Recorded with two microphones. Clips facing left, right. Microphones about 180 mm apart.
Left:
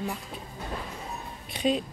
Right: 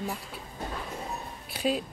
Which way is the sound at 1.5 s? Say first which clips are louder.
Left 2 dB; 5° right (ahead or behind).